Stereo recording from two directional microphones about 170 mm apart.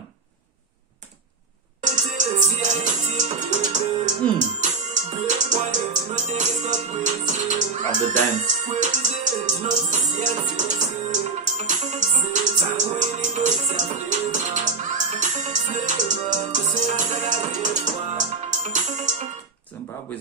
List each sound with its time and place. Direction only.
1.8 s music: 45° right (ahead or behind)
8.6 s music: 45° right (ahead or behind)